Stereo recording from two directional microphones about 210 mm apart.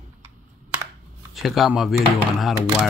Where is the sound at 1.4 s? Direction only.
Centre (ahead or behind).